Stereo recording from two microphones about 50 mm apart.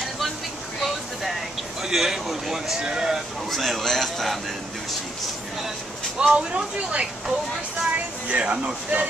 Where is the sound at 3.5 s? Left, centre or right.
Centre.